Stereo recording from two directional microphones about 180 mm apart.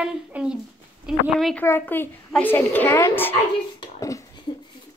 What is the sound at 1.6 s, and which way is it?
A woman's voice, 10° left (ahead or behind).